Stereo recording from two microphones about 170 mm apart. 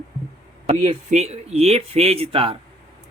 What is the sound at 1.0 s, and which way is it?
Speech, 40° right (ahead or behind).